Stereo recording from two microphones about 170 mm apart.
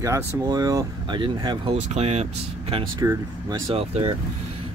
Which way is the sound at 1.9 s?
40° right (ahead or behind).